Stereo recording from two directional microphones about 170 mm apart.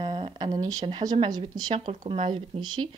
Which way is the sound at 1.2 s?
25° right (ahead or behind).